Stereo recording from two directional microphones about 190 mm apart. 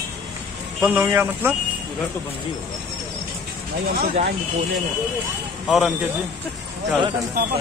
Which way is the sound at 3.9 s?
35° right (ahead or behind).